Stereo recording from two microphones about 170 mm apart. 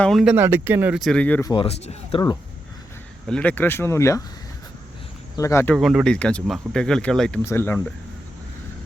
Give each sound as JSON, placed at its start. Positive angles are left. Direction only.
{"t": 0.0, "sound": "speech", "side_deg": 0}
{"t": 1.0, "sound": "speech", "side_deg": 5}
{"t": 1.5, "sound": "speech", "side_deg": 35}
{"t": 3.2, "sound": "speech", "side_deg": 5}
{"t": 5.4, "sound": "speech", "side_deg": 15}
{"t": 5.7, "sound": "speech", "side_deg": 0}